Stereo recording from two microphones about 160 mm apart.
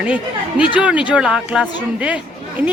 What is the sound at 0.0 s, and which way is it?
Speech, 10° right (ahead or behind).